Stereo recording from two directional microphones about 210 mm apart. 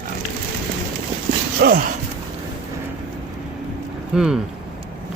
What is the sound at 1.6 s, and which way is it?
Speech, 45° right (ahead or behind).